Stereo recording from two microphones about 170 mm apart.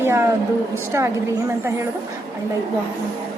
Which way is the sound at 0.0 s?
15° right (ahead or behind).